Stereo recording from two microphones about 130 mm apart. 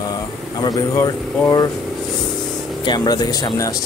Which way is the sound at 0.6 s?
30° left (ahead or behind).